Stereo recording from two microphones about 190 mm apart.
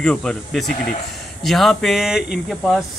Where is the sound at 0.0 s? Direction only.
5° left (ahead or behind).